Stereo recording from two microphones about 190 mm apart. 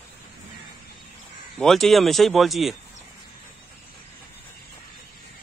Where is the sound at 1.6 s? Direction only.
Centre (ahead or behind).